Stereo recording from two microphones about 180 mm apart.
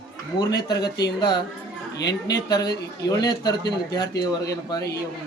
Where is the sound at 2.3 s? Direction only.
20° left (ahead or behind).